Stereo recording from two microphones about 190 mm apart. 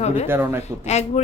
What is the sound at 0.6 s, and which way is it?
Speech, 35° left (ahead or behind).